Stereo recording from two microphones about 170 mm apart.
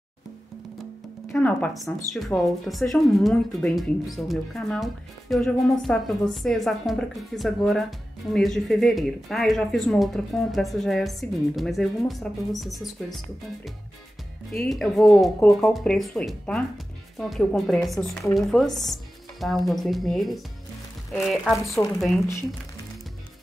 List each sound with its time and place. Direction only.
1.3 s speech: 5° left (ahead or behind)
14.6 s speech: centre (ahead or behind)
21.6 s speech: 20° left (ahead or behind)